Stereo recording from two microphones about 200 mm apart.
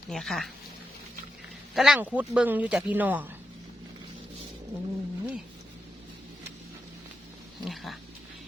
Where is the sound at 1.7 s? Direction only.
Centre (ahead or behind).